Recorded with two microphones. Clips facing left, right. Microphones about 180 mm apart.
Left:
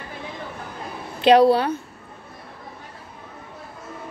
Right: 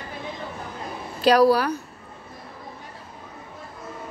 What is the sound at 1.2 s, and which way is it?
Speech, 25° left (ahead or behind).